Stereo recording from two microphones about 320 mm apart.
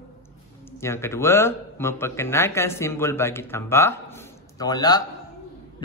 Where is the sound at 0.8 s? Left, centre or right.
Centre.